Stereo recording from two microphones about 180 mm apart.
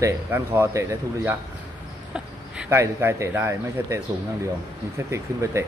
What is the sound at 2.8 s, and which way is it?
Speech, 15° right (ahead or behind).